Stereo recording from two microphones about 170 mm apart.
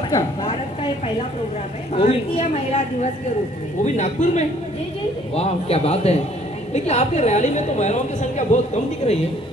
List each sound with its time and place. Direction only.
2.0 s a woman's voice: 40° left (ahead or behind)